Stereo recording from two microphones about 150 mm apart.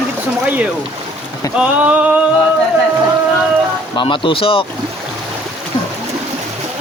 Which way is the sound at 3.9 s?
35° left (ahead or behind).